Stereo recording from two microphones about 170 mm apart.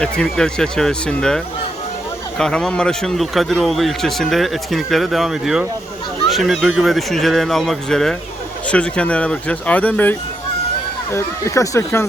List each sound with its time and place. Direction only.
0.0 s speech: 5° left (ahead or behind)
2.4 s speech: 5° left (ahead or behind)